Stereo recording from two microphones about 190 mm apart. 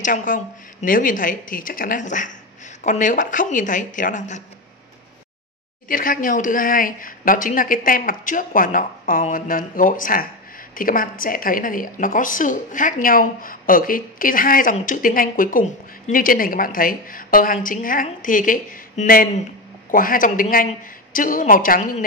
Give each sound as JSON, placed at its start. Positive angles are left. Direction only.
{"t": 0.0, "sound": "a woman's voice", "side_deg": 45}
{"t": 5.9, "sound": "a woman's voice", "side_deg": 45}